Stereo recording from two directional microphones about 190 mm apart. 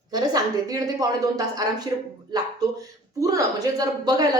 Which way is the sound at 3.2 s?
20° right (ahead or behind).